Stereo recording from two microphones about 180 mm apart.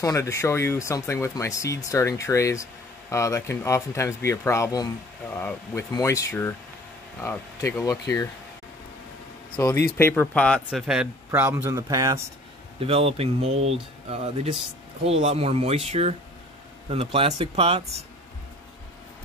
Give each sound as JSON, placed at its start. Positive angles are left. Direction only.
{"t": 0.0, "sound": "speech", "side_deg": 15}
{"t": 9.9, "sound": "speech", "side_deg": 10}
{"t": 10.7, "sound": "a man's voice", "side_deg": -5}
{"t": 12.8, "sound": "speech", "side_deg": -35}